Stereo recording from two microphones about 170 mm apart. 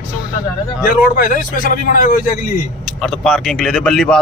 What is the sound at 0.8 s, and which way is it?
A man's voice, 55° left (ahead or behind).